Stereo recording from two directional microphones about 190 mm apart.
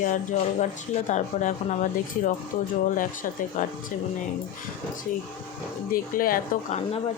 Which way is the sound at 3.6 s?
45° left (ahead or behind).